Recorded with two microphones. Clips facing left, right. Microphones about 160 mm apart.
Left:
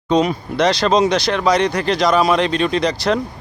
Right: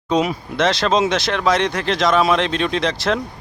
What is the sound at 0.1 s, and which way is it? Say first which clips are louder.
Speech: left 3 dB; 5° right (ahead or behind).